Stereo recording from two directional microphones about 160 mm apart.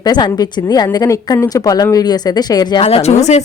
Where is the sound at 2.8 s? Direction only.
40° left (ahead or behind).